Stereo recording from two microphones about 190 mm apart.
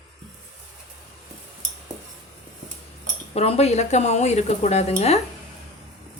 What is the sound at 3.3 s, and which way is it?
Speech, 35° left (ahead or behind).